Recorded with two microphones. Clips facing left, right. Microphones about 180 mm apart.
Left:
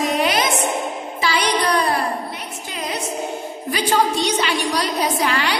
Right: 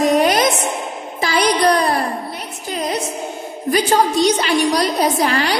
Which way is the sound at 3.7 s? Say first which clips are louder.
Right 4 dB; 45° right (ahead or behind).